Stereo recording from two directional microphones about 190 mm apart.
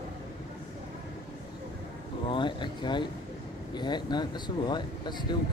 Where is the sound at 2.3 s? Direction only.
25° left (ahead or behind).